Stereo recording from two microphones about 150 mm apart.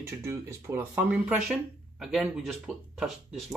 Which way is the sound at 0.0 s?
20° right (ahead or behind).